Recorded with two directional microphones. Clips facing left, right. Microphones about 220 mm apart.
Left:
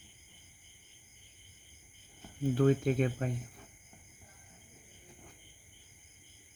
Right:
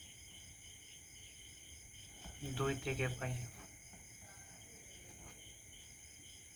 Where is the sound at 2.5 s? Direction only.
40° left (ahead or behind).